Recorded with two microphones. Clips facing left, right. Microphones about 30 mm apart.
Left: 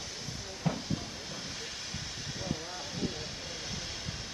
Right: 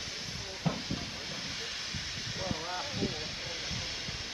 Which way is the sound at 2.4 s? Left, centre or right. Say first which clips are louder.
Right 3 dB; centre.